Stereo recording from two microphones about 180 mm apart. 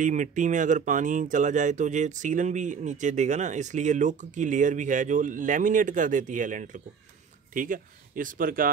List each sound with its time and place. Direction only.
0.0 s speech: 45° right (ahead or behind)